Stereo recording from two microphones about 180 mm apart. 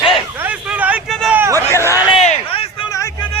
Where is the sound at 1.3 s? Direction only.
15° right (ahead or behind).